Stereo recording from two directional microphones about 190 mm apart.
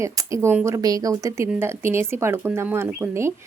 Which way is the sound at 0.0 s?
15° right (ahead or behind).